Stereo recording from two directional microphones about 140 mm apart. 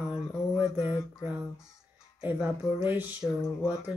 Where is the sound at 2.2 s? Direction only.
10° right (ahead or behind).